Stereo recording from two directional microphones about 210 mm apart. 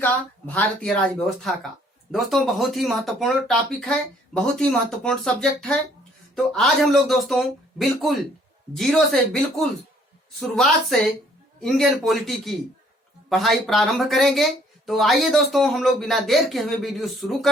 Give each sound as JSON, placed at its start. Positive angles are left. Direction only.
{"t": 0.0, "sound": "speech", "side_deg": 10}